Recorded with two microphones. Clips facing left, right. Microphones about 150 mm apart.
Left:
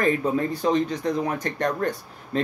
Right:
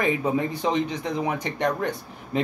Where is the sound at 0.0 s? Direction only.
15° right (ahead or behind).